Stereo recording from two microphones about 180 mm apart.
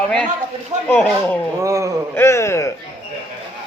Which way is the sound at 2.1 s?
15° left (ahead or behind).